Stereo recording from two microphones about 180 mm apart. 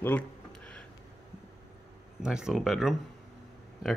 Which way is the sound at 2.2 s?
5° right (ahead or behind).